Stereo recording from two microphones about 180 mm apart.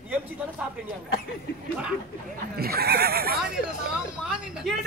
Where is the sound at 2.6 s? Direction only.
60° right (ahead or behind).